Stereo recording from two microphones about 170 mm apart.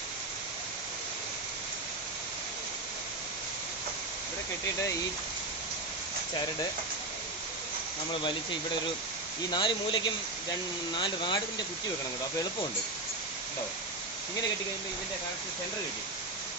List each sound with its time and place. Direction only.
8.1 s speech: 30° left (ahead or behind)